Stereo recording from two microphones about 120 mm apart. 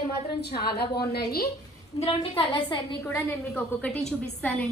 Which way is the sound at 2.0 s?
50° left (ahead or behind).